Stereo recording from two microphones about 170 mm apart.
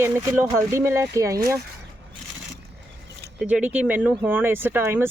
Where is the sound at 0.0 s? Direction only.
15° right (ahead or behind).